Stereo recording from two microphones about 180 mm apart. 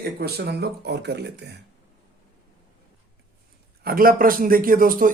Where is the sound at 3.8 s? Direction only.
55° right (ahead or behind).